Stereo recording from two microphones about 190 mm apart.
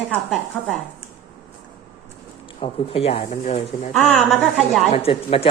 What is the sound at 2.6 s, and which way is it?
Speech, 30° left (ahead or behind).